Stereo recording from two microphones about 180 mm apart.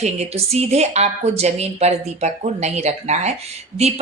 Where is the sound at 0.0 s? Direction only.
35° right (ahead or behind).